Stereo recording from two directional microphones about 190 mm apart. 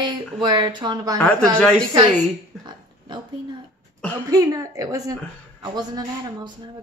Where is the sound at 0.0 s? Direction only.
25° right (ahead or behind).